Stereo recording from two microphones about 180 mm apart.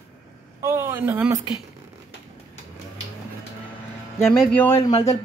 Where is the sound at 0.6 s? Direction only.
15° right (ahead or behind).